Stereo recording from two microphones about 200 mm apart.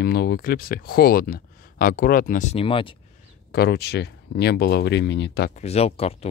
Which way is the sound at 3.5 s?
55° left (ahead or behind).